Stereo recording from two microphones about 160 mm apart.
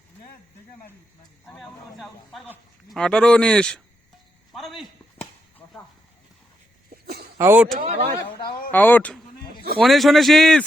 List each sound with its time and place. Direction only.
1.5 s a man's voice: centre (ahead or behind)
5.1 s a sound: 10° left (ahead or behind)
6.9 s a sound: 80° right
7.3 s speech: 15° right (ahead or behind)
7.9 s speech: 45° right (ahead or behind)
8.7 s speech: 10° left (ahead or behind)